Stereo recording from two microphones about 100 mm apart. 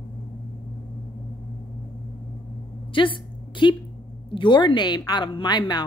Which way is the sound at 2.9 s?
55° left (ahead or behind).